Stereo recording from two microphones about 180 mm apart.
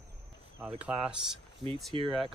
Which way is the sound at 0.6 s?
5° right (ahead or behind).